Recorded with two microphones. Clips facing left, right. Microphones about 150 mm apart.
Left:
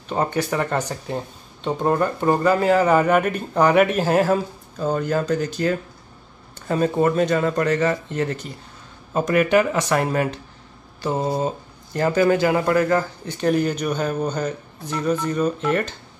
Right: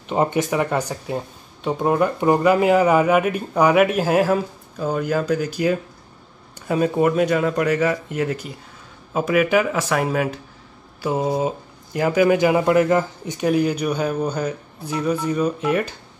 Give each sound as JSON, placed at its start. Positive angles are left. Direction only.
{"t": 0.1, "sound": "speech", "side_deg": -20}
{"t": 0.6, "sound": "speech", "side_deg": -10}